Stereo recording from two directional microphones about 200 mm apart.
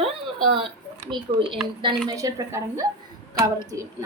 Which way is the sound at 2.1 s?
15° right (ahead or behind).